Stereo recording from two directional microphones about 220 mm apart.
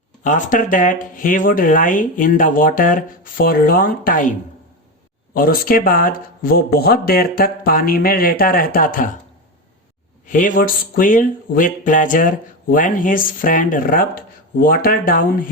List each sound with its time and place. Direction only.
0.2 s speech: 35° left (ahead or behind)
5.3 s speech: 40° left (ahead or behind)
10.2 s speech: 35° left (ahead or behind)